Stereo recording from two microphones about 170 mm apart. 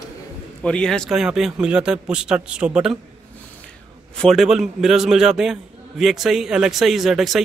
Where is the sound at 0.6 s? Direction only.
5° left (ahead or behind).